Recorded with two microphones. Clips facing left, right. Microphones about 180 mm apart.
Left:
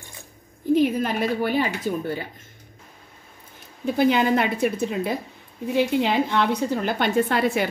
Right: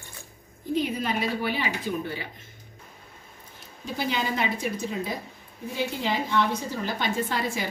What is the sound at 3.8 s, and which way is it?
A woman's voice, 60° left (ahead or behind).